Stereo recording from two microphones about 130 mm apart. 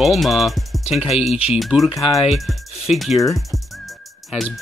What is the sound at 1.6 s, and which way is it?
Speech, centre (ahead or behind).